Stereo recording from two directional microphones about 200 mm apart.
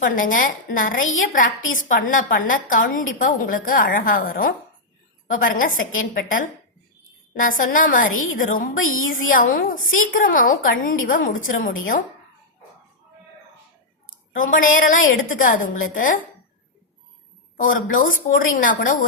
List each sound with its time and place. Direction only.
0.0 s a woman's voice: 40° left (ahead or behind)
14.3 s a woman's voice: 40° left (ahead or behind)
17.6 s a woman's voice: 45° left (ahead or behind)